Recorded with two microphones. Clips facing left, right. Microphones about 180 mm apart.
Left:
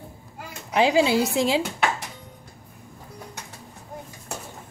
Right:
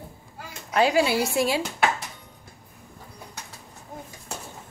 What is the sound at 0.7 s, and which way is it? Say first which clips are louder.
Speech: left 2 dB; 15° left (ahead or behind).